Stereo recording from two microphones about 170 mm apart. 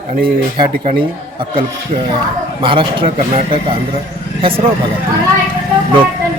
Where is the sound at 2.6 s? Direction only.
30° right (ahead or behind).